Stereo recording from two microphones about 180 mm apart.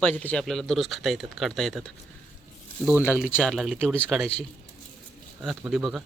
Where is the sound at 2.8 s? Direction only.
10° right (ahead or behind).